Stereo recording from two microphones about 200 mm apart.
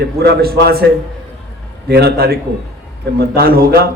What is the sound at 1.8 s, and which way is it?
Speech, 55° right (ahead or behind).